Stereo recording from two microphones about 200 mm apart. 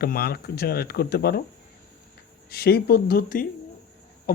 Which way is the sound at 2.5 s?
50° left (ahead or behind).